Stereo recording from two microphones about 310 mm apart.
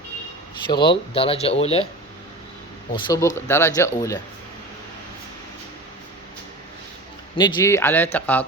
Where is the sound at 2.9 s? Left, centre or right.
Centre.